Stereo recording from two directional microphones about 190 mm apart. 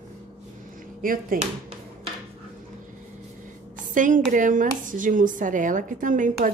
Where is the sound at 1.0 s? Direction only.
50° right (ahead or behind).